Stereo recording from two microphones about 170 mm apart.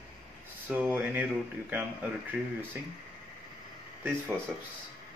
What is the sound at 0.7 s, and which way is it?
Speech, 10° right (ahead or behind).